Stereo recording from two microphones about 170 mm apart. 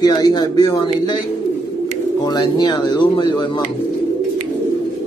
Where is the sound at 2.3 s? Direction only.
25° left (ahead or behind).